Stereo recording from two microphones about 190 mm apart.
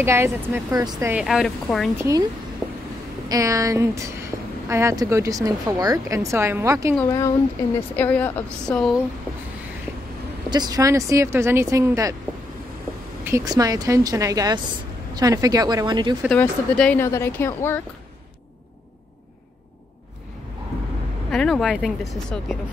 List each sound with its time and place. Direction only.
0.0 s speech: 15° right (ahead or behind)
1.1 s speech: centre (ahead or behind)
2.0 s speech: 15° right (ahead or behind)
3.3 s speech: 15° right (ahead or behind)
7.1 s speech: 15° left (ahead or behind)
10.5 s speech: 20° right (ahead or behind)
13.2 s a woman's voice: 15° right (ahead or behind)
16.3 s speech: 5° left (ahead or behind)
21.3 s speech: centre (ahead or behind)